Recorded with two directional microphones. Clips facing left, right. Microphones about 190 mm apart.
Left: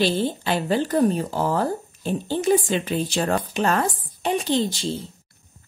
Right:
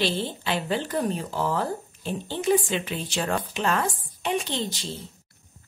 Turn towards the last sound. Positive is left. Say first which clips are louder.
# left 8 dB
turn(degrees=35)  # may be behind; listen again after turning